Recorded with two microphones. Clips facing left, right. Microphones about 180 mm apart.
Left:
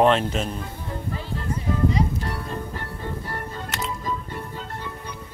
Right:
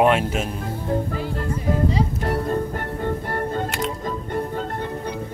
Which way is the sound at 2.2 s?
50° right (ahead or behind).